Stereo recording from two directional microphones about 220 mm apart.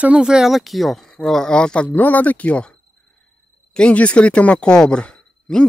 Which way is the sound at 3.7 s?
5° left (ahead or behind).